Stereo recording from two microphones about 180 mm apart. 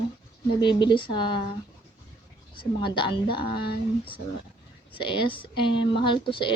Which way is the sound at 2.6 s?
25° left (ahead or behind).